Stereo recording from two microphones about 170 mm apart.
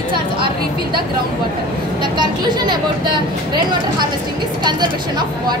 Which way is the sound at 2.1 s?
25° right (ahead or behind).